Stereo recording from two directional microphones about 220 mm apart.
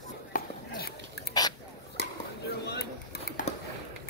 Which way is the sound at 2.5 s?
45° left (ahead or behind).